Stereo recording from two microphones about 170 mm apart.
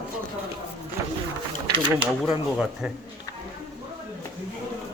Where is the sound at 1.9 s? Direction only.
10° right (ahead or behind).